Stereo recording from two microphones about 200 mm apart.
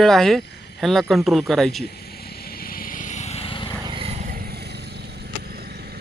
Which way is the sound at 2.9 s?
35° left (ahead or behind).